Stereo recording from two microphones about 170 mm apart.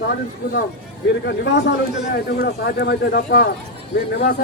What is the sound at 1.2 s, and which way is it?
A man's voice, 75° left (ahead or behind).